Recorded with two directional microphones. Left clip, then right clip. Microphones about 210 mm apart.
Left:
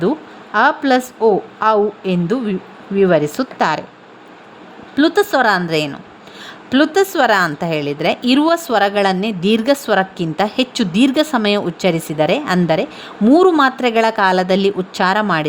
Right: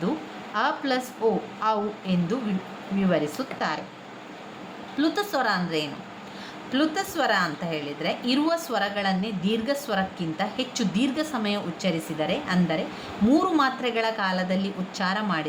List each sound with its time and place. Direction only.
0.5 s a woman's voice: 50° left (ahead or behind)
4.9 s a woman's voice: 45° left (ahead or behind)